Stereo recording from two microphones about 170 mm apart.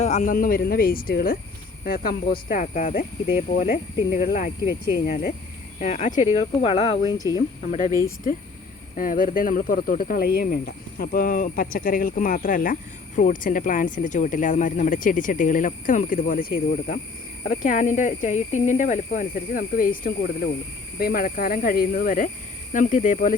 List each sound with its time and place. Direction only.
0.0 s speech: 45° left (ahead or behind)
2.5 s speech: 50° left (ahead or behind)
4.7 s speech: 60° left (ahead or behind)
5.8 s speech: 45° left (ahead or behind); by 7.4 s 25° left (ahead or behind)
7.6 s speech: 45° left (ahead or behind)
9.0 s speech: 55° left (ahead or behind)